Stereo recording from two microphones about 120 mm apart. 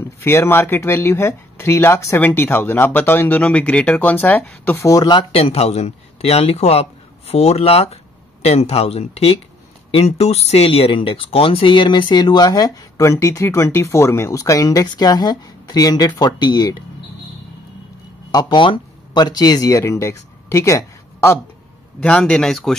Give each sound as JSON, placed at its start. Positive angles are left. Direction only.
{"t": 0.2, "sound": "speech", "side_deg": 20}
{"t": 4.7, "sound": "speech", "side_deg": 30}
{"t": 5.3, "sound": "speech", "side_deg": 60}
{"t": 18.3, "sound": "speech", "side_deg": 35}
{"t": 22.0, "sound": "speech", "side_deg": 10}